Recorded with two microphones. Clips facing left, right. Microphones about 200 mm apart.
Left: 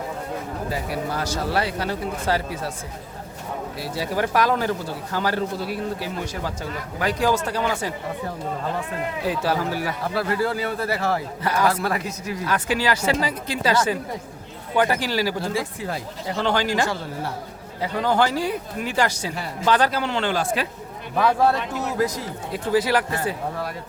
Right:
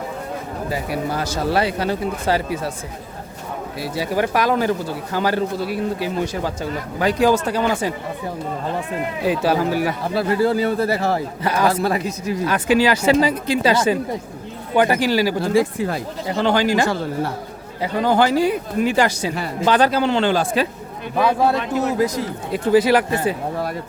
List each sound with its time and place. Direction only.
0.7 s a man's voice: 10° right (ahead or behind)
3.8 s speech: 10° right (ahead or behind)
7.0 s a man's voice: 20° right (ahead or behind)
9.2 s a man's voice: 15° right (ahead or behind); by 12.4 s 30° right (ahead or behind)
12.5 s a man's voice: 20° right (ahead or behind)
15.4 s speech: 60° right (ahead or behind)
16.2 s speech: 10° right (ahead or behind)
16.8 s a man's voice: 55° right (ahead or behind)
17.7 s a man's voice: 10° right (ahead or behind); by 20.7 s 30° right (ahead or behind)
21.2 s a man's voice: 15° right (ahead or behind)